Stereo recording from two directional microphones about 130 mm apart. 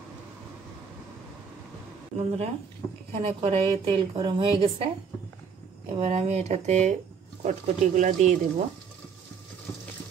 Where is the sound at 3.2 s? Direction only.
45° right (ahead or behind).